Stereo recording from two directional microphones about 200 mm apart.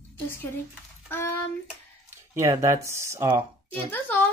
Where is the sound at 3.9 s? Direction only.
10° left (ahead or behind).